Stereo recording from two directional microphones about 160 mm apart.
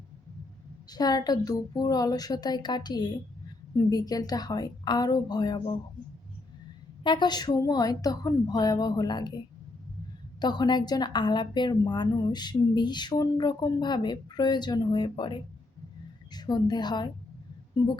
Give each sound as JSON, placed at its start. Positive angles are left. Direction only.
{"t": 0.9, "sound": "a woman's voice", "side_deg": 25}
{"t": 7.0, "sound": "a woman's voice", "side_deg": 30}
{"t": 10.4, "sound": "a woman's voice", "side_deg": 25}